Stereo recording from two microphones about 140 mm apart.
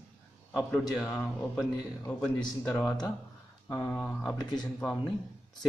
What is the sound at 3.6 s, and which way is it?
Speech, 15° left (ahead or behind).